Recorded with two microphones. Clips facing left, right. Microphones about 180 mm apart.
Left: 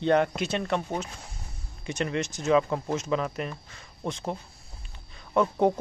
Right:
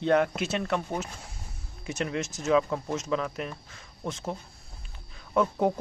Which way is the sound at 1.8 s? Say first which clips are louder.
Left 2 dB; 5° right (ahead or behind).